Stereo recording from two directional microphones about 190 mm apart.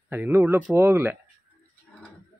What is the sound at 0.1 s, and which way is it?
Speech, 10° right (ahead or behind).